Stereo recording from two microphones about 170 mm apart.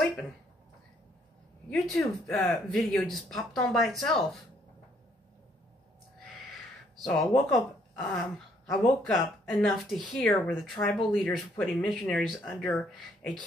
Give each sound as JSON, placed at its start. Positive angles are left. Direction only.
{"t": 1.7, "sound": "speech", "side_deg": 0}
{"t": 7.0, "sound": "a woman's voice", "side_deg": 5}